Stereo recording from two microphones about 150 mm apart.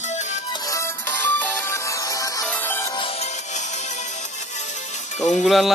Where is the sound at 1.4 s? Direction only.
15° left (ahead or behind).